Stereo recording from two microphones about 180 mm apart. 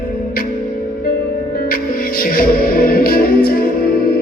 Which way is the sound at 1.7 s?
55° left (ahead or behind).